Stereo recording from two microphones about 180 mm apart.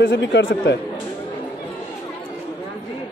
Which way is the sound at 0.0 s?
75° left (ahead or behind).